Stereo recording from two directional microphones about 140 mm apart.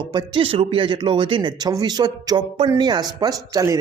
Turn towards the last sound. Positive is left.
turn(degrees=-25)  # may be behind; listen again after turning